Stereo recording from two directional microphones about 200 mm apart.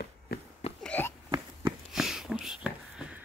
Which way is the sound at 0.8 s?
10° left (ahead or behind).